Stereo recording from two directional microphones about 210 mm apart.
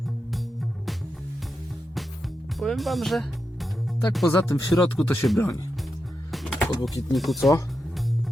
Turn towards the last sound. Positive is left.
turn(degrees=0)  # may be behind; listen again after turning